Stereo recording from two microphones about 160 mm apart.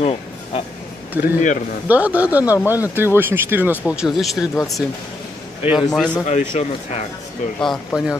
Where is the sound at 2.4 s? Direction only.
20° left (ahead or behind).